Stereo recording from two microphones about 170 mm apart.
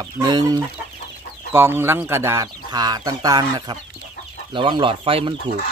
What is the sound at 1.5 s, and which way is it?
Speech, 15° right (ahead or behind).